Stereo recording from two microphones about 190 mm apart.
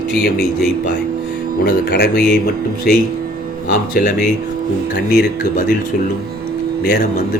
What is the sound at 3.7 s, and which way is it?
Speech, 50° left (ahead or behind).